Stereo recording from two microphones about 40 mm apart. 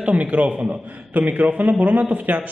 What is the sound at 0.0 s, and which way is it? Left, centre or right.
A man's voice, right.